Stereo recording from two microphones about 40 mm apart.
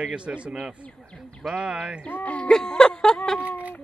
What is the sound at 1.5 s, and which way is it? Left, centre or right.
Speech, right.